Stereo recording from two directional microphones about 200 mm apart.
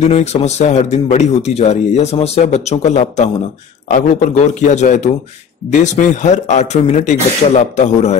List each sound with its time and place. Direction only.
0.0 s speech: 35° left (ahead or behind)